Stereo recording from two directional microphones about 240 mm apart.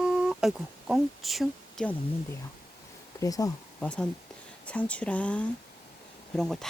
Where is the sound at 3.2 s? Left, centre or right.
Centre.